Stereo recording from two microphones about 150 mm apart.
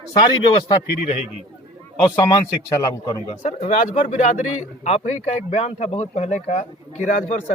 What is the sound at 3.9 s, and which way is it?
Speech, 50° left (ahead or behind).